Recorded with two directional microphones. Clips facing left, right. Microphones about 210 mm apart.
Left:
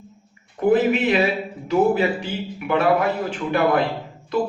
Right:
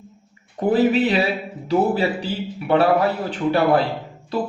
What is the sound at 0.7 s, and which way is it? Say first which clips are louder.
A man's voice: right 1 dB; 35° right (ahead or behind).